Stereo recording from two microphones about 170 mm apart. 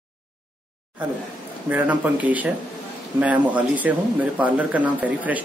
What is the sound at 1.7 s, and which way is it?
Speech, 10° right (ahead or behind).